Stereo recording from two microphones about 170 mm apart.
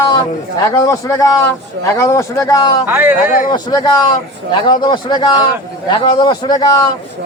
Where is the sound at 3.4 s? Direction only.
25° left (ahead or behind).